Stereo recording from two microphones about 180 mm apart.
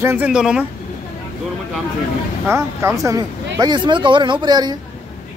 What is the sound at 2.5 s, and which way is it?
Speech, 15° right (ahead or behind).